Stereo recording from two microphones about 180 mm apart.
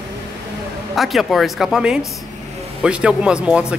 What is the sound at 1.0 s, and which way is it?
Speech, centre (ahead or behind).